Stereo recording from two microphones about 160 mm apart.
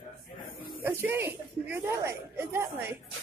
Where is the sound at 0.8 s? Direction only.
15° right (ahead or behind).